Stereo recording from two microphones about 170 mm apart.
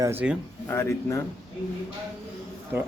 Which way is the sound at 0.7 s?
15° left (ahead or behind).